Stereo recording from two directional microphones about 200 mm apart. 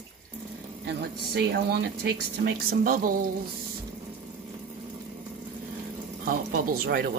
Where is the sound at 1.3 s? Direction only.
55° right (ahead or behind).